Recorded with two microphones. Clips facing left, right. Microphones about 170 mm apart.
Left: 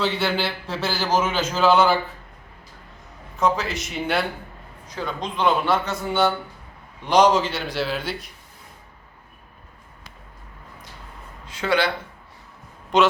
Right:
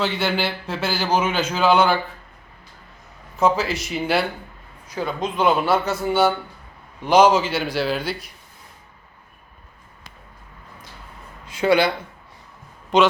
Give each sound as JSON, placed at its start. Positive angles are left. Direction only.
{"t": 0.0, "sound": "a man's voice", "side_deg": 0}
{"t": 3.4, "sound": "a man's voice", "side_deg": -5}
{"t": 11.4, "sound": "speech", "side_deg": -10}
{"t": 12.9, "sound": "a man's voice", "side_deg": 0}